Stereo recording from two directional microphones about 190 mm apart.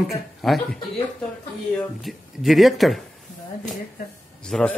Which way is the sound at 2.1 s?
Centre (ahead or behind).